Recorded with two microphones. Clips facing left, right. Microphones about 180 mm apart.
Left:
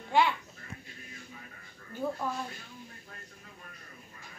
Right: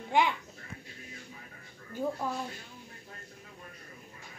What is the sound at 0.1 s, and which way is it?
Speech, 15° right (ahead or behind).